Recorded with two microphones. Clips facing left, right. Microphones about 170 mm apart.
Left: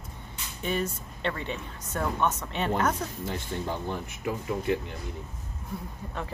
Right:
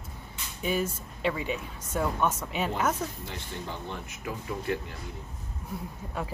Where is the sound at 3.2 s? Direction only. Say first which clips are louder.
Left 6 dB; 45° left (ahead or behind).